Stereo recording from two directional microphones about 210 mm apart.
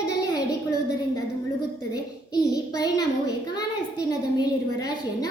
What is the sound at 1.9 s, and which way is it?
A child's voice, 15° left (ahead or behind).